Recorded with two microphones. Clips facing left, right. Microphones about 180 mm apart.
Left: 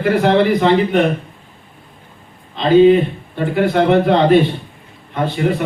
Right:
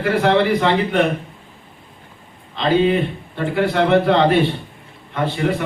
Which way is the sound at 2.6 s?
15° left (ahead or behind).